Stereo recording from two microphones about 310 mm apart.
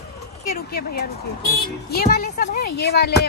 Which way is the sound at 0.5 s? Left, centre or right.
Left.